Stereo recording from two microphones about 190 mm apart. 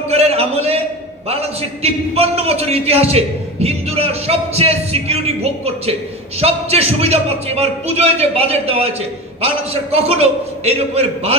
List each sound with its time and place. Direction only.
0.1 s a man's voice: 30° right (ahead or behind)
9.9 s a man's voice: 30° right (ahead or behind)